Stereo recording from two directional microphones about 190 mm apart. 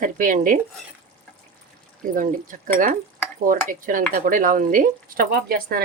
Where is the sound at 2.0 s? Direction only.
45° right (ahead or behind).